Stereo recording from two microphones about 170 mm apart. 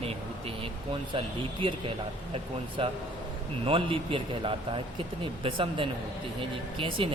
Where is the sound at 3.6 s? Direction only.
30° right (ahead or behind).